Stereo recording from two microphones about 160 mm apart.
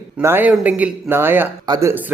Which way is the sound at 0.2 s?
15° right (ahead or behind).